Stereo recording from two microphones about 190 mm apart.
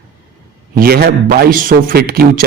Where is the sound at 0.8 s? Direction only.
50° right (ahead or behind).